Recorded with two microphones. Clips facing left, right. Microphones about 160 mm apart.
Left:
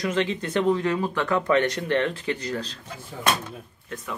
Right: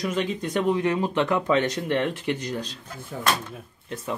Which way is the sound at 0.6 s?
15° right (ahead or behind).